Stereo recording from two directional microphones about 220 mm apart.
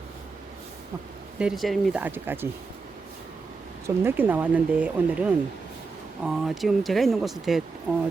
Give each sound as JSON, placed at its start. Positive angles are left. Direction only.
{"t": 1.4, "sound": "speech", "side_deg": 0}
{"t": 3.8, "sound": "speech", "side_deg": -10}